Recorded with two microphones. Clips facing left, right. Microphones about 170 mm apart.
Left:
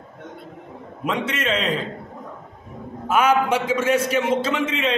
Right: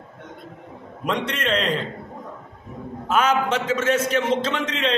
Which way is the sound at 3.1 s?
10° left (ahead or behind).